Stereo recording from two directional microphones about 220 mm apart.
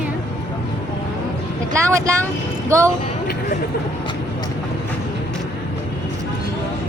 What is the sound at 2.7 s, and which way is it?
Speech, 15° right (ahead or behind).